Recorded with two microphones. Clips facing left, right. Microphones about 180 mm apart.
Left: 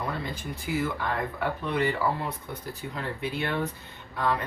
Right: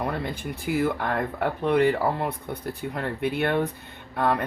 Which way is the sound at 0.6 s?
55° right (ahead or behind).